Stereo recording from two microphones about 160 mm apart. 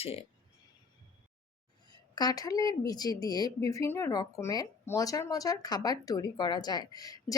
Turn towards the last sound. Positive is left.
turn(degrees=25)  # may be behind; listen again after turning